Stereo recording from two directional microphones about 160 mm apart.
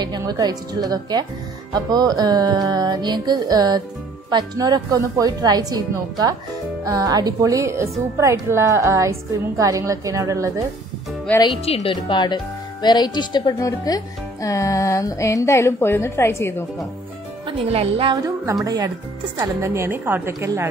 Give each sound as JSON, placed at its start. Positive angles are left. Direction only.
{"t": 0.0, "sound": "music", "side_deg": -25}
{"t": 8.2, "sound": "a woman's voice", "side_deg": -15}
{"t": 9.6, "sound": "music", "side_deg": -20}
{"t": 11.5, "sound": "speech", "side_deg": 35}
{"t": 17.5, "sound": "speech", "side_deg": -40}
{"t": 18.1, "sound": "music", "side_deg": -20}
{"t": 19.3, "sound": "a woman's voice", "side_deg": -20}